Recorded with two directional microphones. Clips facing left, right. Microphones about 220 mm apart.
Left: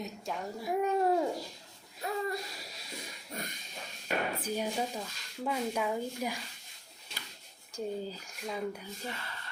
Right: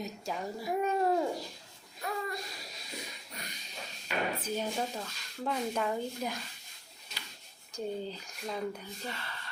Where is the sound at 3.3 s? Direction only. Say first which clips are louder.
Left 7 dB; 50° left (ahead or behind).